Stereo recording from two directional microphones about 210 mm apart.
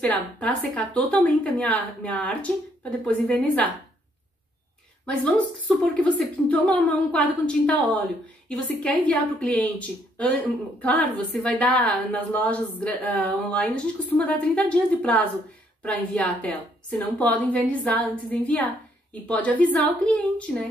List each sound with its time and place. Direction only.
0.0 s a woman's voice: 5° left (ahead or behind)
5.0 s a woman's voice: 5° left (ahead or behind)